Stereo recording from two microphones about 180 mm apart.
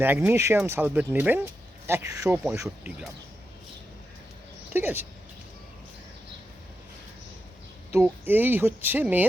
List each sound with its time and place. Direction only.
0.0 s speech: 10° right (ahead or behind)
4.7 s speech: 10° right (ahead or behind)
7.9 s speech: 15° right (ahead or behind)